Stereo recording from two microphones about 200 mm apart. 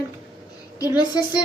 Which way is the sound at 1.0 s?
20° left (ahead or behind).